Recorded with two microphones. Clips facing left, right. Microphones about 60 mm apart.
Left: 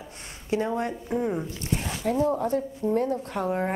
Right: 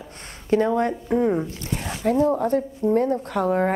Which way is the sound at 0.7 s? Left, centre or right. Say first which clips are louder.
Right 6 dB; right.